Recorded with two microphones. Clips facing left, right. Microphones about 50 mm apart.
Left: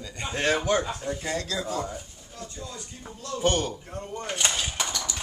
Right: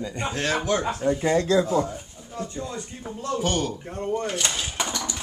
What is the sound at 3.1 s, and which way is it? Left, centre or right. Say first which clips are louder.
Speech: right 6 dB; right.